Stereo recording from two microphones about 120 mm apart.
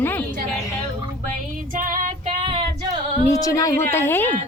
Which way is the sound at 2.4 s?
45° right (ahead or behind).